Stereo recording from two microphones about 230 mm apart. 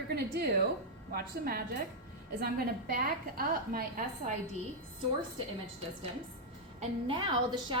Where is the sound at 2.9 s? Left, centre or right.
Right.